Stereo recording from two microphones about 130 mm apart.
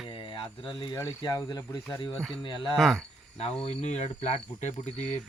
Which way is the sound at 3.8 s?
55° left (ahead or behind).